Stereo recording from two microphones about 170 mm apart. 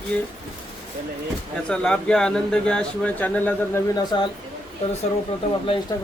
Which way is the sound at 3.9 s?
25° left (ahead or behind).